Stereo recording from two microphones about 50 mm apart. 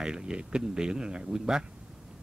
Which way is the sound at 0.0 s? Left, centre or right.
Centre.